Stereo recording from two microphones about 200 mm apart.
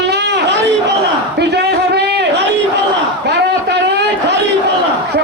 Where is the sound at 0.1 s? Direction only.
55° right (ahead or behind).